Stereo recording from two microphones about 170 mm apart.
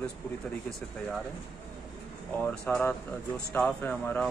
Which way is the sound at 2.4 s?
10° left (ahead or behind).